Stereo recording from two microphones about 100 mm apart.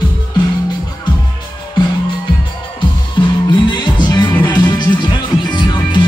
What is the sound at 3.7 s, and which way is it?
Music, 50° left (ahead or behind).